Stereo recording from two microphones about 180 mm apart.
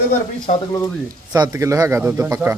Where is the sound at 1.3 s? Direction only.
25° right (ahead or behind).